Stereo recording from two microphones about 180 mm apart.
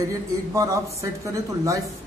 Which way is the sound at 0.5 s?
15° right (ahead or behind).